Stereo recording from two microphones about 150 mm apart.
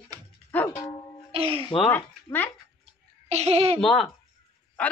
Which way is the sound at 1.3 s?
40° right (ahead or behind).